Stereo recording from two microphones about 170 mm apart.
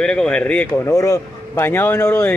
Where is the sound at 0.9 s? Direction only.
20° left (ahead or behind).